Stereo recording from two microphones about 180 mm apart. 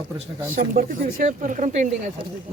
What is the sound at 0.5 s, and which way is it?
Speech, 50° right (ahead or behind).